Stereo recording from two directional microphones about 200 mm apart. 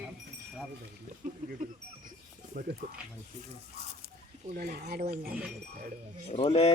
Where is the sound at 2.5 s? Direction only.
40° right (ahead or behind).